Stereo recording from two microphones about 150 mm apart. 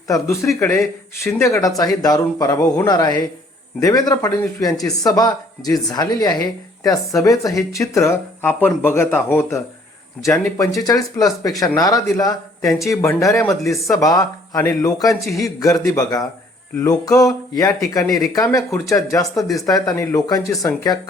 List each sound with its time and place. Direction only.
0.4 s speech: 15° left (ahead or behind)
12.6 s speech: centre (ahead or behind)
13.0 s speech: 20° left (ahead or behind)
13.6 s speech: centre (ahead or behind)
13.8 s speech: 25° left (ahead or behind)